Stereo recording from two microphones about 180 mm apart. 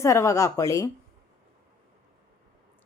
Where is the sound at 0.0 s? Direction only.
15° left (ahead or behind).